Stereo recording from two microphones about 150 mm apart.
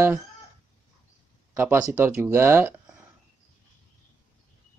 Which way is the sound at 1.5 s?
15° right (ahead or behind).